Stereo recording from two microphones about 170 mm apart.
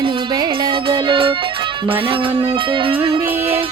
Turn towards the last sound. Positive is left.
turn(degrees=-30)  # may be behind; listen again after turning